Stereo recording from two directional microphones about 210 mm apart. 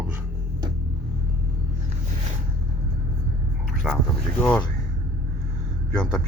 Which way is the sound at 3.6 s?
Centre (ahead or behind).